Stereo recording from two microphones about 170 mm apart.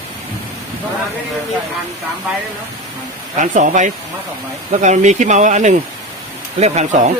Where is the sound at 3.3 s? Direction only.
45° right (ahead or behind).